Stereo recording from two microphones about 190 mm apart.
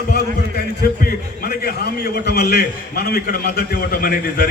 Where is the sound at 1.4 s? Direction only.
50° left (ahead or behind).